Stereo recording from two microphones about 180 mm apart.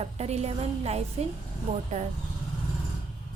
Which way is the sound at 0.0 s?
35° right (ahead or behind).